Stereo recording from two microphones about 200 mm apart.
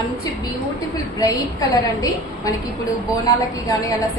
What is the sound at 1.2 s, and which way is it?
A woman's voice, 15° left (ahead or behind).